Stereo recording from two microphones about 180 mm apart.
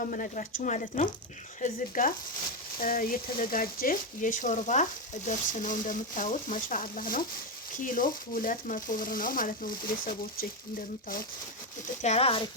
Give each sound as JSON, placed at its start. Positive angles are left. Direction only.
{"t": 0.0, "sound": "speech", "side_deg": 50}
{"t": 12.0, "sound": "speech", "side_deg": 35}